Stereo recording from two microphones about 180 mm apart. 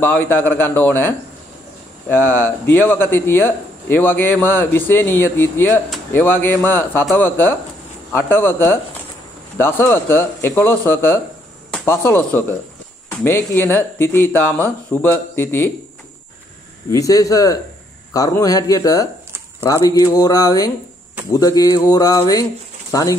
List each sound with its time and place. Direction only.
0.0 s speech: 10° left (ahead or behind)
16.9 s speech: 20° left (ahead or behind)